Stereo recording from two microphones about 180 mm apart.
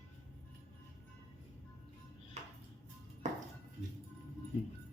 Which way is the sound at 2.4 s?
35° right (ahead or behind).